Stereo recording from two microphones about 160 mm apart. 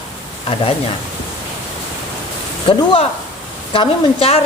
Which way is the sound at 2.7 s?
35° left (ahead or behind).